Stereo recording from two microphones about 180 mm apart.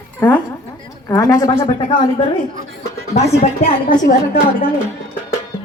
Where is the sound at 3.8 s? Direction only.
45° left (ahead or behind).